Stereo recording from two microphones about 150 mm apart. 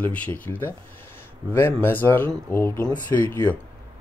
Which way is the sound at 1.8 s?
15° left (ahead or behind).